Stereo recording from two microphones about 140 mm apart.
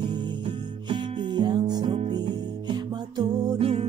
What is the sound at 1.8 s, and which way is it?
Music, 40° right (ahead or behind).